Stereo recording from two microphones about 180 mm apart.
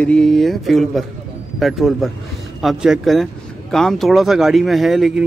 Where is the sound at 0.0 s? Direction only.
5° left (ahead or behind).